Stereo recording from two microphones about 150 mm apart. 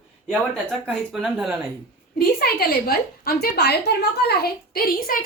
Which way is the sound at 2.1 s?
90° left.